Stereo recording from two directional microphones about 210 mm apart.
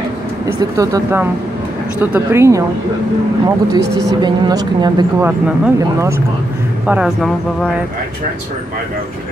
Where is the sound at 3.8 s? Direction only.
55° right (ahead or behind).